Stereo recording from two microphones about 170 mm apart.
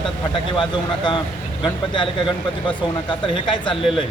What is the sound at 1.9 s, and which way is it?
Speech, 30° left (ahead or behind).